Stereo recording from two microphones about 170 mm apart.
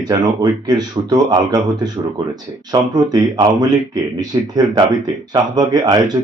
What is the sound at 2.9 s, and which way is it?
Speech, 25° right (ahead or behind).